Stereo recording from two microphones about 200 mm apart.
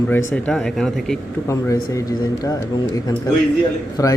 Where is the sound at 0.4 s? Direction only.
Centre (ahead or behind).